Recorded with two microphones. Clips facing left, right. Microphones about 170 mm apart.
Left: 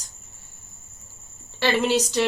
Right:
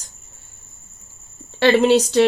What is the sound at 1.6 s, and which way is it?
Speech, 60° right (ahead or behind).